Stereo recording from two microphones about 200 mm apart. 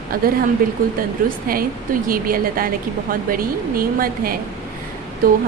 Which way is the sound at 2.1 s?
45° right (ahead or behind).